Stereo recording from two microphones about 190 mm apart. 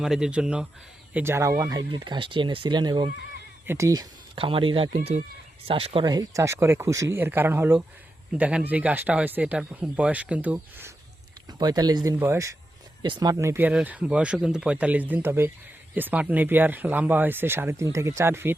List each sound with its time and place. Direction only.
0.0 s speech: 5° right (ahead or behind)
4.4 s speech: 30° right (ahead or behind)